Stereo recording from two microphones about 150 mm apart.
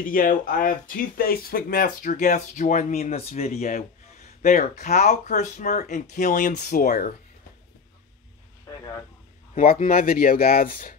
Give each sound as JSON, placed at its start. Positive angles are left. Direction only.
{"t": 0.0, "sound": "speech", "side_deg": 65}
{"t": 9.7, "sound": "speech", "side_deg": 70}